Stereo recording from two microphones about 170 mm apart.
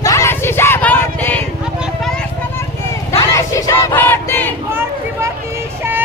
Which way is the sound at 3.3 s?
20° left (ahead or behind).